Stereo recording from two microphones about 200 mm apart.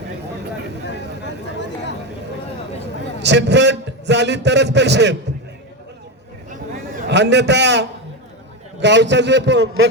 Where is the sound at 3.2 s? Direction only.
60° right (ahead or behind).